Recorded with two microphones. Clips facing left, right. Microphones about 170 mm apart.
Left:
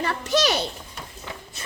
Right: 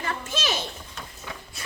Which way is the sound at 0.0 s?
70° left (ahead or behind).